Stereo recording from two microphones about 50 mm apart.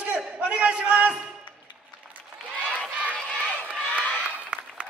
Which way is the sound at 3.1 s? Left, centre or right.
Centre.